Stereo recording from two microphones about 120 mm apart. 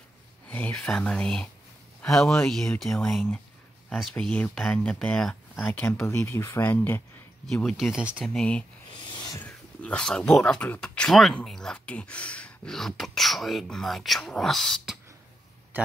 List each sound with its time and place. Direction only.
0.5 s speech: 10° left (ahead or behind)
5.7 s speech: 20° left (ahead or behind)
7.4 s speech: 5° left (ahead or behind)
8.3 s speech: 10° left (ahead or behind)
8.9 s a sound: 40° left (ahead or behind)
9.4 s speech: 10° left (ahead or behind)